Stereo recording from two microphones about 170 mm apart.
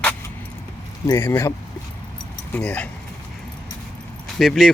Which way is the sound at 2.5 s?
5° left (ahead or behind).